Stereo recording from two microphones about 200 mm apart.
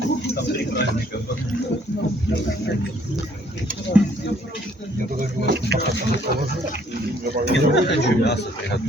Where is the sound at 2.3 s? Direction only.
65° left (ahead or behind).